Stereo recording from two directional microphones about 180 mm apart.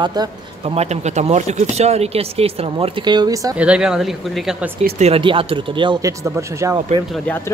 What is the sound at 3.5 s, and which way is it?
Speech, 5° right (ahead or behind).